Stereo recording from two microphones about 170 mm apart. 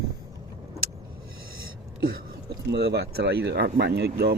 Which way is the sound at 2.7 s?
75° right (ahead or behind).